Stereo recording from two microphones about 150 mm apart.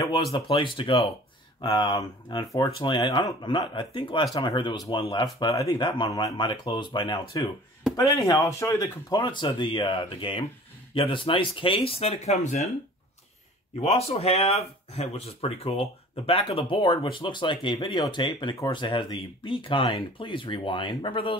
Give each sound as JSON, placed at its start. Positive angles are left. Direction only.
{"t": 0.0, "sound": "speech", "side_deg": 25}
{"t": 13.7, "sound": "speech", "side_deg": 40}